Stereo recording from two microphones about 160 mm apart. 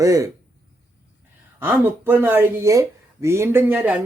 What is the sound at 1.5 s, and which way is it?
Speech, 15° right (ahead or behind).